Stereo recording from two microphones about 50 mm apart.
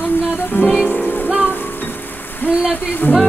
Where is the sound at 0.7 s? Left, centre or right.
Centre.